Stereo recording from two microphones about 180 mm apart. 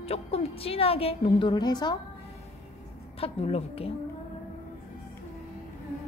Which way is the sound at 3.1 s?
35° left (ahead or behind).